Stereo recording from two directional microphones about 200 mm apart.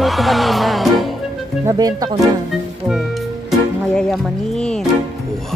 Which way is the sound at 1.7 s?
20° right (ahead or behind).